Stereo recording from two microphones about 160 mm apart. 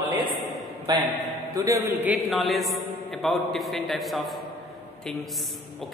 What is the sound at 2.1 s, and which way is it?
A man's voice, centre (ahead or behind).